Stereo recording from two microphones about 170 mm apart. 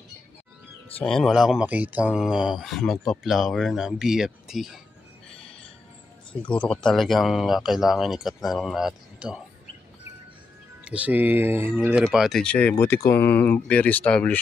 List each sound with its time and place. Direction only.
0.9 s speech: 5° left (ahead or behind)
6.5 s speech: 5° left (ahead or behind)
10.8 s speech: 5° right (ahead or behind)
12.0 s speech: centre (ahead or behind)